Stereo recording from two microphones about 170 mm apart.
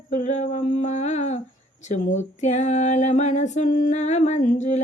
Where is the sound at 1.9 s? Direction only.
45° left (ahead or behind).